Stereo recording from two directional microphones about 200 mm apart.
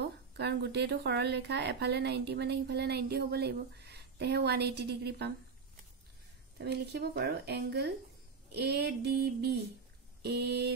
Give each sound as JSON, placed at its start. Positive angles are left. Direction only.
{"t": 0.0, "sound": "a woman's voice", "side_deg": -55}
{"t": 6.6, "sound": "a woman's voice", "side_deg": -55}
{"t": 8.5, "sound": "a sound", "side_deg": -55}
{"t": 10.2, "sound": "a woman's voice", "side_deg": -55}